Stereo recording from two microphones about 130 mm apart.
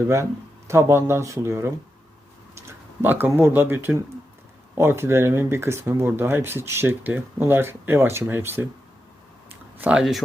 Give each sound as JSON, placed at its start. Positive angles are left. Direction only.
{"t": 0.7, "sound": "speech", "side_deg": -20}
{"t": 3.0, "sound": "speech", "side_deg": -15}
{"t": 9.8, "sound": "speech", "side_deg": -5}